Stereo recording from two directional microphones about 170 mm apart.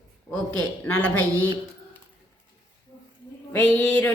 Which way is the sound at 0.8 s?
10° left (ahead or behind).